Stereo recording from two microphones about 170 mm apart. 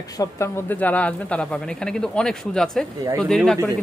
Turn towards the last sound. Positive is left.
turn(degrees=0)  # may be behind; listen again after turning